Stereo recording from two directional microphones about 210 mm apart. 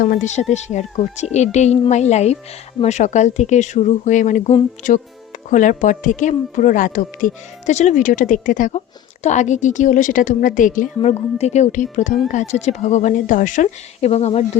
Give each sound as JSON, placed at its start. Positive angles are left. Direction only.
{"t": 0.0, "sound": "speech", "side_deg": 35}